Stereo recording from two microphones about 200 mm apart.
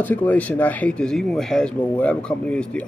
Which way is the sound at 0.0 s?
10° left (ahead or behind).